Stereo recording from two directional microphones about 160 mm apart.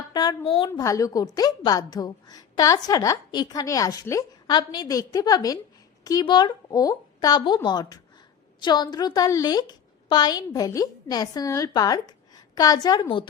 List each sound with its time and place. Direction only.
0.1 s a woman's voice: 25° left (ahead or behind)
0.7 s a woman's voice: 20° left (ahead or behind)